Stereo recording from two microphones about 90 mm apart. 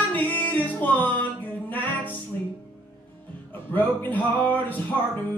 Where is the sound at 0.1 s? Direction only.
20° left (ahead or behind).